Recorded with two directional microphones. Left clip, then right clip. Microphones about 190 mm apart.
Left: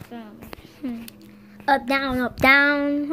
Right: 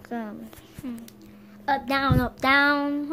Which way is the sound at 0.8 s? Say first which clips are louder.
Left 5 dB; 20° left (ahead or behind).